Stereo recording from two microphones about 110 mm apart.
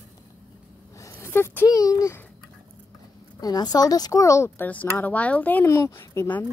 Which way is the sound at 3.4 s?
35° left (ahead or behind).